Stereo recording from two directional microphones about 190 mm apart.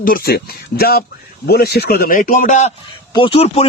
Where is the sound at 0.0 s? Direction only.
50° left (ahead or behind).